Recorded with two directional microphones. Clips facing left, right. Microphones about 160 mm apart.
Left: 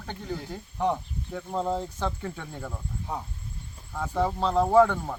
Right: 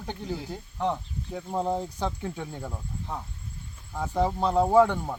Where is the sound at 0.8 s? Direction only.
10° left (ahead or behind).